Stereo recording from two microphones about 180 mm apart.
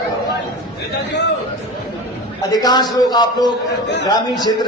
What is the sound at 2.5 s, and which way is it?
A man's voice, 20° left (ahead or behind).